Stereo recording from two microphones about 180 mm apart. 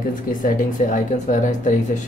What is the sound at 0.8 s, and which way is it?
Speech, 45° left (ahead or behind).